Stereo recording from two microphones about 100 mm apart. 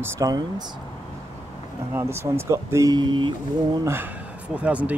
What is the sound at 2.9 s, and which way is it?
Speech, 50° right (ahead or behind).